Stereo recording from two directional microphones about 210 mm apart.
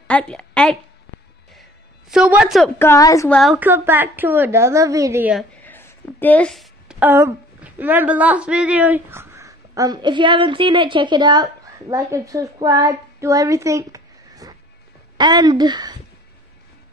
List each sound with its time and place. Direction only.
0.1 s a woman's voice: 5° left (ahead or behind)
2.0 s a woman's voice: 5° right (ahead or behind)
2.8 s a woman's voice: 15° left (ahead or behind)
3.3 s a woman's voice: centre (ahead or behind)
5.3 s a woman's voice: 10° left (ahead or behind); by 16.0 s 20° right (ahead or behind)